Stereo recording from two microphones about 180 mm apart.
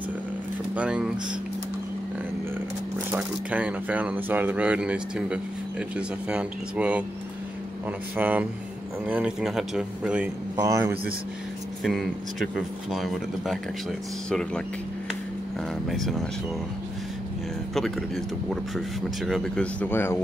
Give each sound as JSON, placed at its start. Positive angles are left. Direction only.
{"t": 0.7, "sound": "speech", "side_deg": -5}
{"t": 3.1, "sound": "speech", "side_deg": -5}
{"t": 8.2, "sound": "speech", "side_deg": -10}
{"t": 10.5, "sound": "speech", "side_deg": -20}
{"t": 11.8, "sound": "speech", "side_deg": 0}
{"t": 15.9, "sound": "speech", "side_deg": 0}
{"t": 17.7, "sound": "speech", "side_deg": 0}